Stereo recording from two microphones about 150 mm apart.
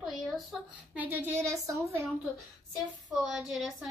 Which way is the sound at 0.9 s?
10° right (ahead or behind).